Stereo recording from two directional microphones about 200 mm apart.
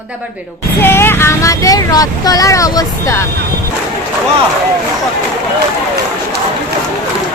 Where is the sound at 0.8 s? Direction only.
10° left (ahead or behind).